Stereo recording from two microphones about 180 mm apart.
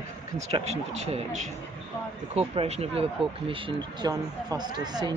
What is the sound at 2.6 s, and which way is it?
Speech, 35° right (ahead or behind).